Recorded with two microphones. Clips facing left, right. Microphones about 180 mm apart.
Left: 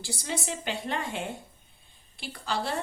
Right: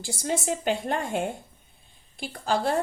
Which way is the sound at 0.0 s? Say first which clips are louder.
Right 5 dB; 50° right (ahead or behind).